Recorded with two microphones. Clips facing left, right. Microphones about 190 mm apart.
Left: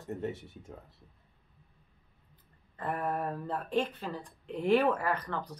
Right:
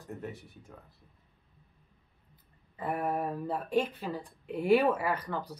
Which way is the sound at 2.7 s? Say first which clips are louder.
Right 2 dB; 10° right (ahead or behind).